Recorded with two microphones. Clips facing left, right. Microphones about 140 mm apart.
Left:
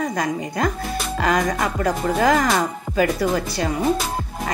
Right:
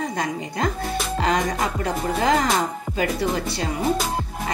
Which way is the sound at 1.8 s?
30° right (ahead or behind).